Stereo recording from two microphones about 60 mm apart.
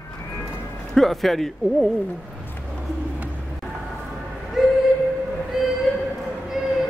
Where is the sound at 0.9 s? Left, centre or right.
Centre.